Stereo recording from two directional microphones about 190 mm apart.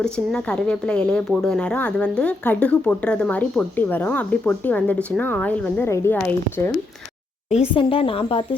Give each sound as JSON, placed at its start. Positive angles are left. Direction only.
{"t": 0.0, "sound": "speech", "side_deg": 5}
{"t": 7.7, "sound": "a woman's voice", "side_deg": 30}